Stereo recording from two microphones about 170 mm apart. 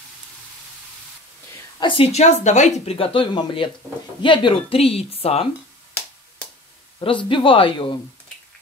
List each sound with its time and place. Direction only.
1.8 s speech: 30° left (ahead or behind)
7.0 s speech: 30° left (ahead or behind)